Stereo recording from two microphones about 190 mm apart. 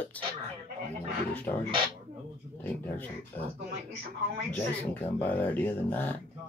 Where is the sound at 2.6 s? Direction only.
10° left (ahead or behind).